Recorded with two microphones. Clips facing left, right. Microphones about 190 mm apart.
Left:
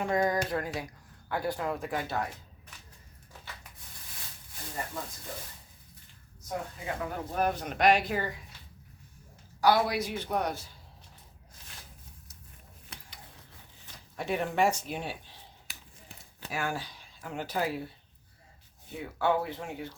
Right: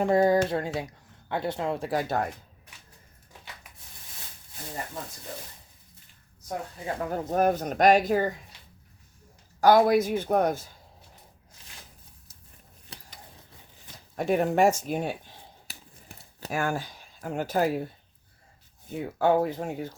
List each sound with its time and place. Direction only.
0.0 s speech: 30° right (ahead or behind)
6.8 s speech: 40° right (ahead or behind)
9.6 s speech: 50° right (ahead or behind)
14.2 s speech: 45° right (ahead or behind)
15.6 s a sound: 40° right (ahead or behind)
18.9 s speech: 40° right (ahead or behind)